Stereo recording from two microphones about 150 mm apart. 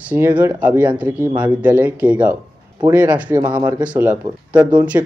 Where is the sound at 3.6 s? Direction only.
30° right (ahead or behind).